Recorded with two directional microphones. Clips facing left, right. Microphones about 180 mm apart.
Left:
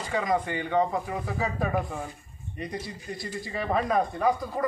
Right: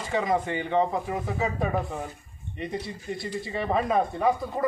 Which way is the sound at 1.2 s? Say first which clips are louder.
Right 1 dB; 20° right (ahead or behind).